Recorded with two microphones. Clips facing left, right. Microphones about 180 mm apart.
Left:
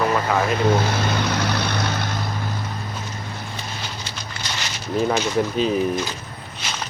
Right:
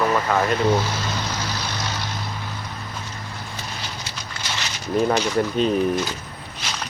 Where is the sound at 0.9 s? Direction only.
60° left (ahead or behind).